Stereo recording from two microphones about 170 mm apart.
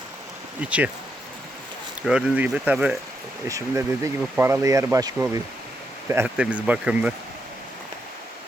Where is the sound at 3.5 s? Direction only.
20° right (ahead or behind).